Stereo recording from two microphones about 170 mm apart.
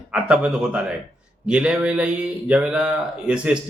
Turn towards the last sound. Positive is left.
turn(degrees=-5)  # may be behind; listen again after turning